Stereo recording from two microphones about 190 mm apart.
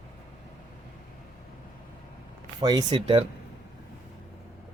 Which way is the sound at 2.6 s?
20° right (ahead or behind).